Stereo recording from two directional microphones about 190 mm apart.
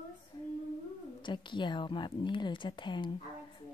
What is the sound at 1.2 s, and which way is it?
Speech, 25° left (ahead or behind).